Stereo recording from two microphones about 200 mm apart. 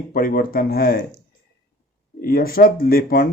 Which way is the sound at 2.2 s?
45° left (ahead or behind).